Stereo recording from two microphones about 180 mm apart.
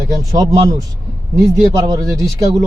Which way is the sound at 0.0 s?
20° right (ahead or behind).